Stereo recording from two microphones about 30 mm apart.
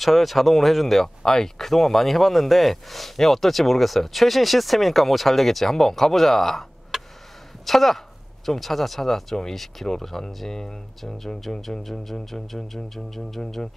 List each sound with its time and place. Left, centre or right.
0.0 s speech: centre
1.2 s speech: centre
6.9 s a sound: centre
7.6 s music: centre
11.5 s speech: left
11.8 s music: centre